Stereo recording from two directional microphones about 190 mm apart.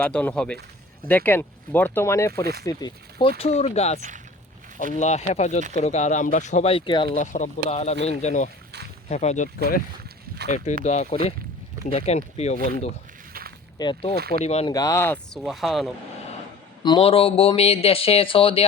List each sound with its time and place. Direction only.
0.0 s speech: 5° left (ahead or behind)
2.4 s speech: 55° right (ahead or behind)
2.6 s speech: 25° left (ahead or behind)
7.2 s speech: 40° left (ahead or behind)
10.8 s speech: 35° left (ahead or behind)
13.7 s speech: 25° left (ahead or behind)
14.7 s speech: 20° left (ahead or behind); by 15.9 s centre (ahead or behind)
16.8 s speech: 25° left (ahead or behind)